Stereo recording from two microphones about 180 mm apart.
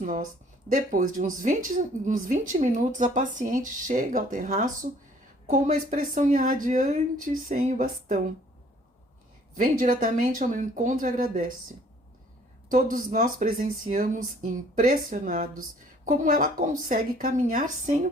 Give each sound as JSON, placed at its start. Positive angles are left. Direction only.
{"t": 0.0, "sound": "speech", "side_deg": -50}
{"t": 9.6, "sound": "speech", "side_deg": -50}
{"t": 12.7, "sound": "speech", "side_deg": -45}